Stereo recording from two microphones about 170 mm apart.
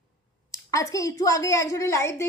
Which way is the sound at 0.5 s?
20° left (ahead or behind).